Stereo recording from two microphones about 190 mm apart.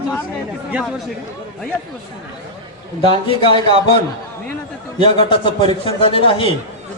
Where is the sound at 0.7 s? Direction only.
5° right (ahead or behind).